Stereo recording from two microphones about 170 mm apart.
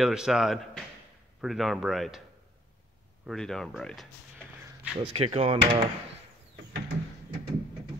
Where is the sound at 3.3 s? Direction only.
5° left (ahead or behind).